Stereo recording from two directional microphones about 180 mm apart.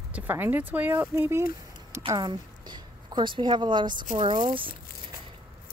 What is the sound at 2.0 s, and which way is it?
A woman's voice, 25° right (ahead or behind).